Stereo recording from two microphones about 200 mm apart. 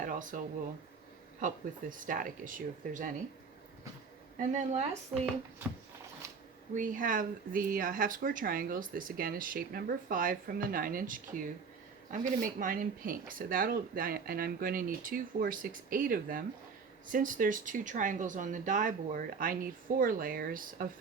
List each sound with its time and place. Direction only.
0.0 s a sound: 40° right (ahead or behind)
1.4 s speech: 40° right (ahead or behind)
4.4 s speech: 35° right (ahead or behind)
6.7 s speech: 40° right (ahead or behind)